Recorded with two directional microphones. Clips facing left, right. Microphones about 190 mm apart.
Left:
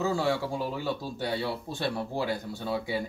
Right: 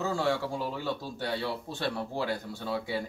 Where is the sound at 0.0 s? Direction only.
10° left (ahead or behind).